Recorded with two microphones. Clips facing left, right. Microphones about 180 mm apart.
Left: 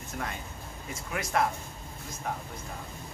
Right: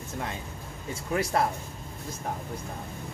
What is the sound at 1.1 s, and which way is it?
Speech, 35° right (ahead or behind).